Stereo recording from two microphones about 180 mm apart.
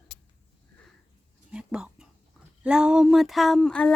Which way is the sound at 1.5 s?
5° right (ahead or behind).